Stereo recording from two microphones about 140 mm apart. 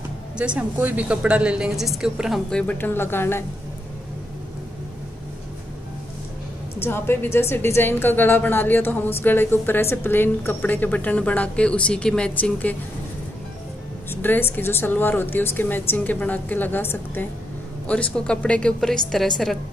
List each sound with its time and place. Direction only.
0.4 s a woman's voice: 10° right (ahead or behind)
2.6 s a woman's voice: 10° left (ahead or behind)
6.8 s a woman's voice: 15° left (ahead or behind)
14.1 s a woman's voice: 15° left (ahead or behind)